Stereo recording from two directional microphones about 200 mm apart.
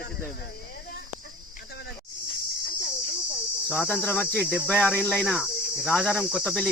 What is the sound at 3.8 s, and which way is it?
Cricket, 10° left (ahead or behind).